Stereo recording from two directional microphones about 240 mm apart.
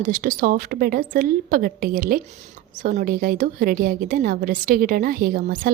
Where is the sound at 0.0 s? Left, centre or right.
Right.